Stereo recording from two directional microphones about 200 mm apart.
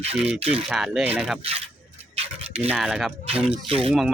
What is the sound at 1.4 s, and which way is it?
Speech, 30° right (ahead or behind).